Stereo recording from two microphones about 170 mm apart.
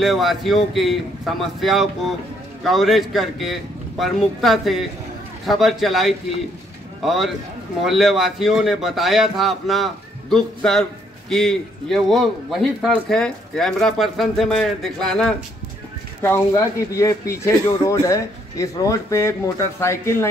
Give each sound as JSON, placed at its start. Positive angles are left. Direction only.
{"t": 0.0, "sound": "a man's voice", "side_deg": 0}
{"t": 16.2, "sound": "speech", "side_deg": 15}